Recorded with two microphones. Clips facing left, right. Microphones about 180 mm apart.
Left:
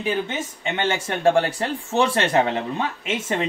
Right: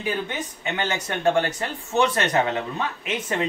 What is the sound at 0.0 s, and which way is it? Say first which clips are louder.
Speech: left 3 dB; 25° left (ahead or behind).